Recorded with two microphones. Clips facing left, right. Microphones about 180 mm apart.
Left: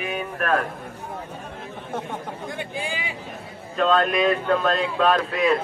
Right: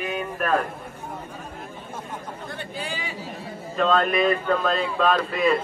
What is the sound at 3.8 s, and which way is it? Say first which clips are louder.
Speech: left 1 dB; centre (ahead or behind).